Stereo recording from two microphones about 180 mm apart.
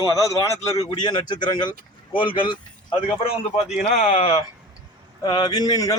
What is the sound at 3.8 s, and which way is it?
A man's voice, 40° left (ahead or behind).